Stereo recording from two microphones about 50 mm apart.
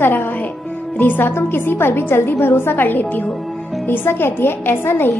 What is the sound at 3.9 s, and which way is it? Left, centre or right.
A woman's voice, left.